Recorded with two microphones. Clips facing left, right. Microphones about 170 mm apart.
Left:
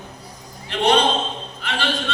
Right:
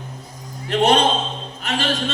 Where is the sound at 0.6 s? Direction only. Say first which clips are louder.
Right 2 dB; 45° right (ahead or behind).